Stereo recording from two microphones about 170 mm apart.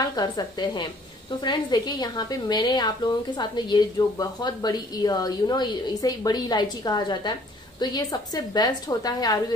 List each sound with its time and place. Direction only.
0.0 s a woman's voice: 25° left (ahead or behind)